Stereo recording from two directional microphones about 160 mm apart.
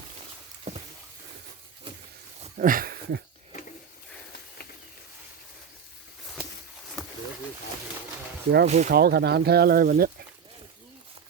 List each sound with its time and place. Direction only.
2.6 s speech: 60° right (ahead or behind); by 3.2 s 85° right
8.6 s speech: 45° right (ahead or behind)
8.9 s speech: 85° right; by 10.1 s 65° right (ahead or behind)